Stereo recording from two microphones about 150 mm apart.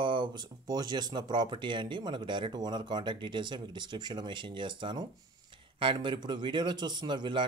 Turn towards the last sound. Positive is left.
turn(degrees=-30)  # may be behind; listen again after turning